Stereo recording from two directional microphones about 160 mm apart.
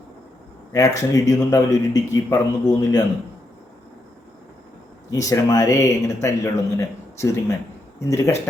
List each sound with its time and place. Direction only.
0.7 s a man's voice: 20° left (ahead or behind)
5.1 s a man's voice: 20° left (ahead or behind)